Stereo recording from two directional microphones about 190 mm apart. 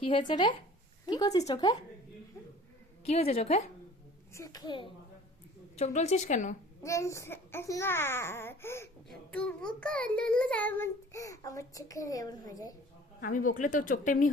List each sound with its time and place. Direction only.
0.0 s speech: 25° left (ahead or behind)
3.0 s a woman's voice: 35° left (ahead or behind)
4.4 s speech: 20° left (ahead or behind)
5.7 s a woman's voice: 35° left (ahead or behind)
6.8 s child singing: 15° left (ahead or behind)
13.5 s speech: 45° left (ahead or behind)